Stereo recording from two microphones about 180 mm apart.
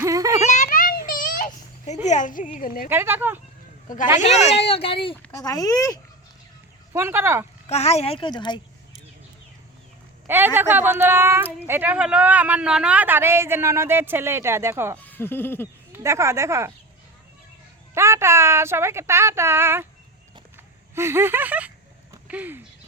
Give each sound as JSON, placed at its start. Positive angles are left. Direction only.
{"t": 0.0, "sound": "a sound", "side_deg": -20}
{"t": 0.4, "sound": "a sound", "side_deg": 40}
{"t": 2.0, "sound": "a woman's voice", "side_deg": 45}
{"t": 2.9, "sound": "speech", "side_deg": -10}
{"t": 4.2, "sound": "speech", "side_deg": 35}
{"t": 6.9, "sound": "speech", "side_deg": -15}
{"t": 7.7, "sound": "speech", "side_deg": 35}
{"t": 10.2, "sound": "speech", "side_deg": -10}
{"t": 14.9, "sound": "owl", "side_deg": 10}
{"t": 15.9, "sound": "speech", "side_deg": -15}
{"t": 17.9, "sound": "speech", "side_deg": -15}
{"t": 20.9, "sound": "speech", "side_deg": -15}